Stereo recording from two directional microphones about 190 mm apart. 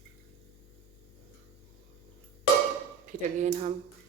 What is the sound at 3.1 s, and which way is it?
Speech, 40° right (ahead or behind).